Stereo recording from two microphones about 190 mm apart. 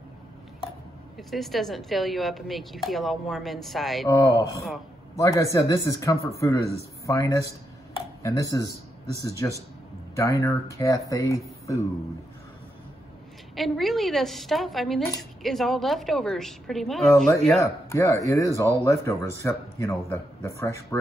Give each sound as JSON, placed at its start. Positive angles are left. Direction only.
{"t": 1.1, "sound": "a woman's voice", "side_deg": 0}
{"t": 4.1, "sound": "a man's voice", "side_deg": 15}
{"t": 13.6, "sound": "a woman's voice", "side_deg": 0}
{"t": 17.6, "sound": "a man's voice", "side_deg": 15}